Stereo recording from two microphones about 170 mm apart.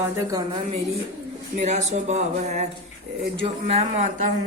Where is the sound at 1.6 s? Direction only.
40° right (ahead or behind).